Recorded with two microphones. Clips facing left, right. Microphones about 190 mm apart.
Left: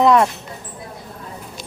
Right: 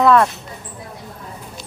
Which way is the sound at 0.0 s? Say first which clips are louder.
Even; 20° left (ahead or behind).